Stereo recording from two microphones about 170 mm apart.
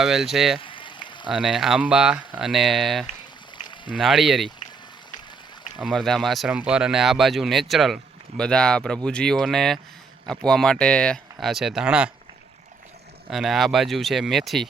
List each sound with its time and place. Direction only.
0.0 s speech: centre (ahead or behind)
0.6 s a sound: 30° left (ahead or behind)
1.3 s speech: centre (ahead or behind)
5.8 s speech: centre (ahead or behind)
13.3 s speech: centre (ahead or behind)